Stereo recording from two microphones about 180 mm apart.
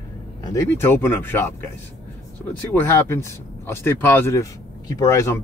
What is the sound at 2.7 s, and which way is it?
Speech, 15° left (ahead or behind).